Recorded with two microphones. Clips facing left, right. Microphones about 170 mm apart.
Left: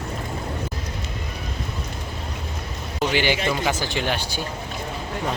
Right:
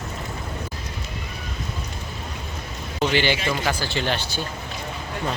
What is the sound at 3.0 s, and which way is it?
Speech, 10° left (ahead or behind).